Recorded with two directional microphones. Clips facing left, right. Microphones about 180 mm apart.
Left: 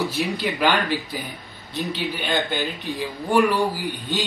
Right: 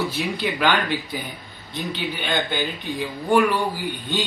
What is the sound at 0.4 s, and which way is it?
A man's voice, 5° left (ahead or behind).